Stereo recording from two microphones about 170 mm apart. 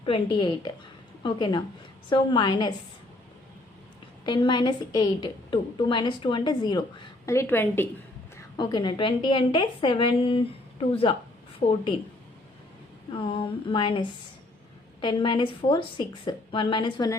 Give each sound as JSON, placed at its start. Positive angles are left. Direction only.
{"t": 0.0, "sound": "a woman's voice", "side_deg": 30}
{"t": 4.3, "sound": "a woman's voice", "side_deg": 25}
{"t": 8.4, "sound": "a woman's voice", "side_deg": 25}
{"t": 13.1, "sound": "a woman's voice", "side_deg": 30}